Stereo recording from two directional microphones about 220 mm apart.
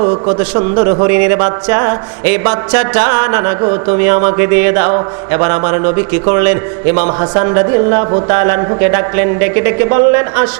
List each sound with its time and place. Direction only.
0.0 s speech: 25° right (ahead or behind)